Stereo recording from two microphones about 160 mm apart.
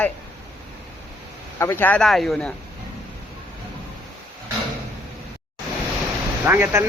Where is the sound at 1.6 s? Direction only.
15° left (ahead or behind).